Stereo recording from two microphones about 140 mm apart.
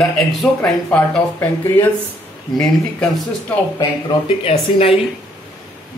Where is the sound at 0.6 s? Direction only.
15° left (ahead or behind).